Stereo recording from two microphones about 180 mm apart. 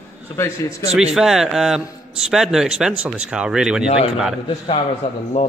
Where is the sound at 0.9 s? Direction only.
5° right (ahead or behind).